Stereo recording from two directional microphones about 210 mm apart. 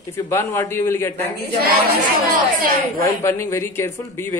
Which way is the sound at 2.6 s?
45° right (ahead or behind).